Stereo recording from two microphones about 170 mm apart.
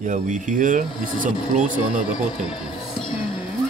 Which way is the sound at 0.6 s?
50° right (ahead or behind).